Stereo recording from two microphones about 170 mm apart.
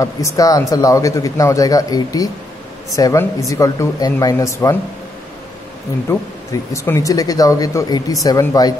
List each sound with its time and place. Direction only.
0.0 s speech: 20° left (ahead or behind)
6.0 s speech: 15° left (ahead or behind)